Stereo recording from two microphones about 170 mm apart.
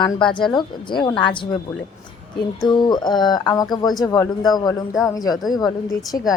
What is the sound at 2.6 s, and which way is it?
Speech, 25° left (ahead or behind).